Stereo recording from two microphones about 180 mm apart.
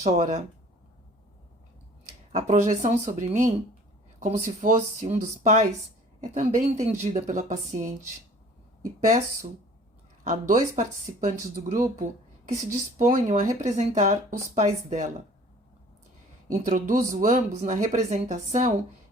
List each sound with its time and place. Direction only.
0.0 s speech: 40° right (ahead or behind)
2.5 s speech: 45° right (ahead or behind)
9.0 s speech: 45° right (ahead or behind)
16.5 s speech: 45° right (ahead or behind)